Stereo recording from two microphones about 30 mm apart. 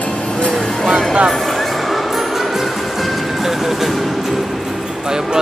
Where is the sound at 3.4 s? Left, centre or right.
Centre.